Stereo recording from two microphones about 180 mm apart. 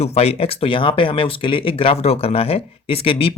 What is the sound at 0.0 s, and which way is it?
Speech, 35° left (ahead or behind).